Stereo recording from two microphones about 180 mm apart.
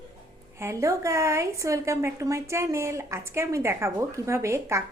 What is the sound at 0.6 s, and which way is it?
A woman's voice, 15° right (ahead or behind).